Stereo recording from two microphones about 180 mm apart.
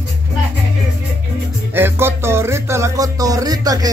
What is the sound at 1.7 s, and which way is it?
Music, 10° right (ahead or behind).